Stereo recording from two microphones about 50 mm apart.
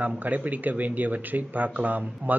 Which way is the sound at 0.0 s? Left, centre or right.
Right.